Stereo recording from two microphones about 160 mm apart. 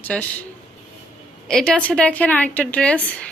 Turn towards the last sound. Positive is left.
turn(degrees=5)  # may be behind; listen again after turning